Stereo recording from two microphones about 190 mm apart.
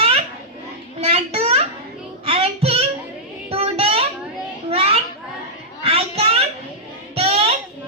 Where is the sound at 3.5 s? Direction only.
30° right (ahead or behind).